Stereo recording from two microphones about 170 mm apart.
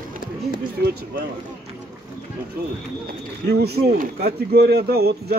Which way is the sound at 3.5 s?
70° right (ahead or behind).